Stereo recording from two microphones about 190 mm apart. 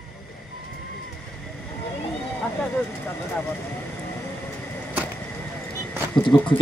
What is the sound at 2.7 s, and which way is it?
Vehicle, 10° left (ahead or behind).